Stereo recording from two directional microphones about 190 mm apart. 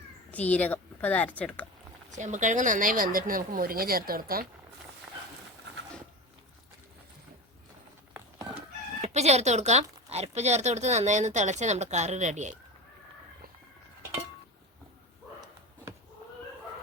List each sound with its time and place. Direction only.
0.3 s a woman's voice: 10° left (ahead or behind)
2.0 s a woman's voice: 40° right (ahead or behind)
9.0 s speech: 35° right (ahead or behind)
15.4 s a sound: 15° right (ahead or behind)